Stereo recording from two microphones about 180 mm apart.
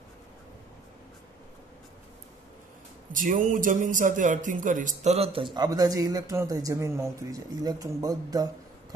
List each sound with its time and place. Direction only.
3.1 s a man's voice: 45° right (ahead or behind); by 8.5 s 20° right (ahead or behind)